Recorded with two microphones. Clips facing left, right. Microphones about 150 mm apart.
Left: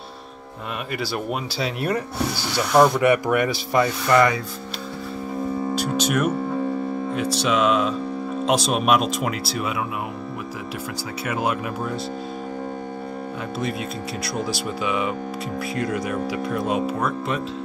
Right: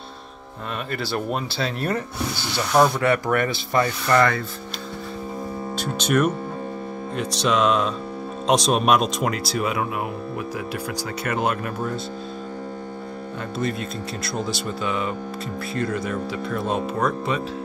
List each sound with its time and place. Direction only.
0.9 s speech: 5° left (ahead or behind)
3.0 s speech: 15° left (ahead or behind)
5.8 s speech: 10° left (ahead or behind)
11.2 s speech: 5° left (ahead or behind)
13.6 s speech: 10° left (ahead or behind)